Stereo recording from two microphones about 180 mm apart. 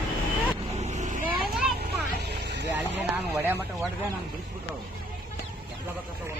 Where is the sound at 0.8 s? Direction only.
40° right (ahead or behind).